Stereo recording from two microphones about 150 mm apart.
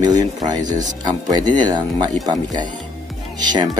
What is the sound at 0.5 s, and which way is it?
Speech, 25° right (ahead or behind).